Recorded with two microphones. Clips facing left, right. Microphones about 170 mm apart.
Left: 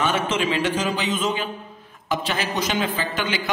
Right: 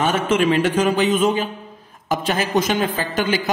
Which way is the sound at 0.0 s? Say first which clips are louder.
Right 5 dB; 50° right (ahead or behind).